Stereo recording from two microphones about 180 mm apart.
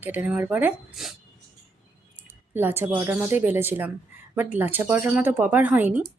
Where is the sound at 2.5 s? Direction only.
10° right (ahead or behind).